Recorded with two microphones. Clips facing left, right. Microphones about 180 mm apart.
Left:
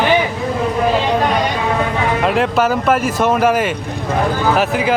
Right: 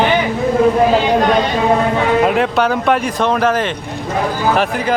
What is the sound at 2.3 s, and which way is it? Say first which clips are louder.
Speech: even; centre (ahead or behind).